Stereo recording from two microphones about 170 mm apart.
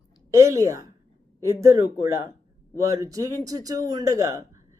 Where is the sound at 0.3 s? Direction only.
20° right (ahead or behind).